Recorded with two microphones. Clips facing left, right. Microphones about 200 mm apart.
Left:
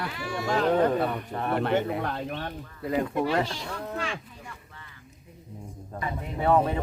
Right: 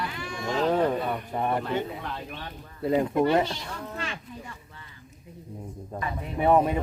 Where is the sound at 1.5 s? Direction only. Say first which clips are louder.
Left 8 dB; 65° left (ahead or behind).